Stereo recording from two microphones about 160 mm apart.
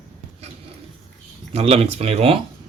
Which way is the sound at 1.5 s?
40° right (ahead or behind).